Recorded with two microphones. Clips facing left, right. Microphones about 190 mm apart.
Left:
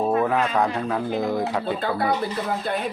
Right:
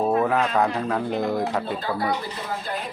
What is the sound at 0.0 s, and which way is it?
Speech, centre (ahead or behind).